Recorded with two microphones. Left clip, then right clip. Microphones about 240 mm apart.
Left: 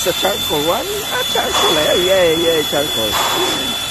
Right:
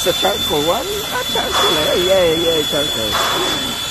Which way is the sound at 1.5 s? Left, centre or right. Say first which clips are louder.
Even; left.